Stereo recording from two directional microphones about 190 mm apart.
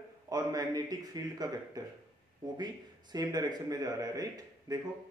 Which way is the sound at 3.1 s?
20° right (ahead or behind).